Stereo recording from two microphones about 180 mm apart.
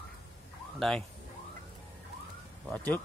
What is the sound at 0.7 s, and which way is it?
Speech, centre (ahead or behind).